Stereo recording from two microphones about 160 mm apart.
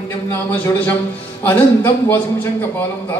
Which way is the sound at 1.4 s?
10° left (ahead or behind).